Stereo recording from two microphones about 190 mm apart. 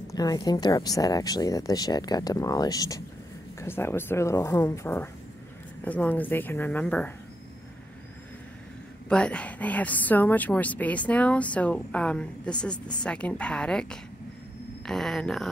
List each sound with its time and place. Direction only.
0.1 s a woman's voice: 20° left (ahead or behind)
9.1 s a woman's voice: 5° left (ahead or behind)